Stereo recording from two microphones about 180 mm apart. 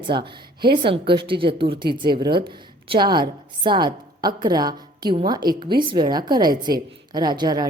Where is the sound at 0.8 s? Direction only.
30° right (ahead or behind).